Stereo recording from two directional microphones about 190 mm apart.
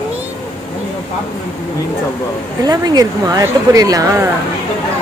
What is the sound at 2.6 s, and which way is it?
Speech, 20° right (ahead or behind).